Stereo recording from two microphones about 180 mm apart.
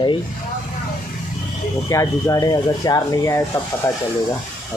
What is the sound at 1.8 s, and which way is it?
Speech, 20° left (ahead or behind).